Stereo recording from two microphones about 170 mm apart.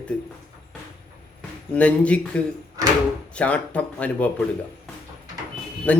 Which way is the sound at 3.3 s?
5° left (ahead or behind).